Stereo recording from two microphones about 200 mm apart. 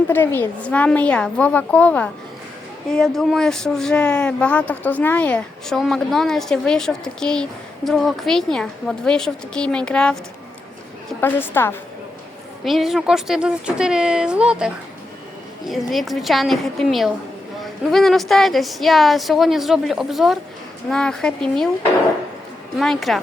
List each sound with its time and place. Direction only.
0.1 s a woman's voice: 10° left (ahead or behind)
11.2 s a woman's voice: 10° left (ahead or behind)
12.6 s speech: centre (ahead or behind)
22.8 s speech: centre (ahead or behind)